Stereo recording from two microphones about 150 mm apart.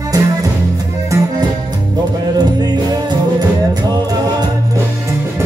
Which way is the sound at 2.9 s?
25° right (ahead or behind).